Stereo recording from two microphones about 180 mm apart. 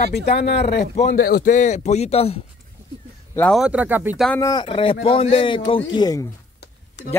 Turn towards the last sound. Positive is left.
turn(degrees=80)